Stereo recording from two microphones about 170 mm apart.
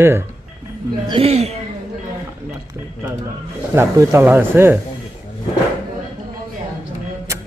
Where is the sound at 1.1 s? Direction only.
35° right (ahead or behind).